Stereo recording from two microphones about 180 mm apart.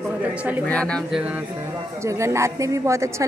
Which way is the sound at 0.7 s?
5° left (ahead or behind).